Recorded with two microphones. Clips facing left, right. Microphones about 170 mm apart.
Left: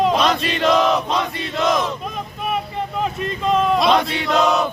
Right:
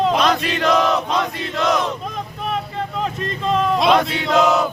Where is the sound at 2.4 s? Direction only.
10° left (ahead or behind).